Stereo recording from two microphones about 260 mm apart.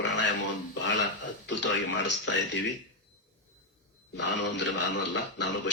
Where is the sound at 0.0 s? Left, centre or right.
Left.